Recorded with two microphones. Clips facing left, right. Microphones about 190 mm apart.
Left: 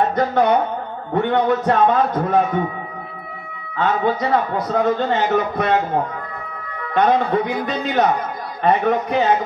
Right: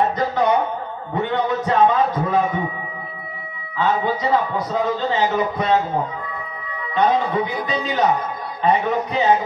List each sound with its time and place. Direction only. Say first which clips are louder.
0.1 s music: left 2 dB; 55° left (ahead or behind)
1.1 s a man's voice: left 4 dB; 55° left (ahead or behind)
3.7 s a man's voice: left 1 dB; 55° left (ahead or behind)
6.8 s a man's voice: left 2 dB; 55° left (ahead or behind)